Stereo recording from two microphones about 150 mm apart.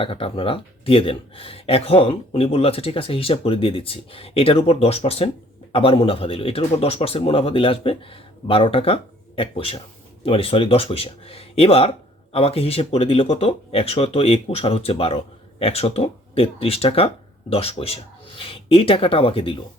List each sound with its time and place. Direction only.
0.0 s speech: 35° left (ahead or behind)